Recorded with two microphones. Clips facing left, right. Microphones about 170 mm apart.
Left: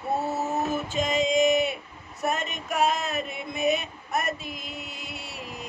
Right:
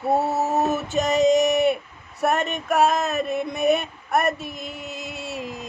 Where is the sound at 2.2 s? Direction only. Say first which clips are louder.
Right 6 dB; 65° right (ahead or behind).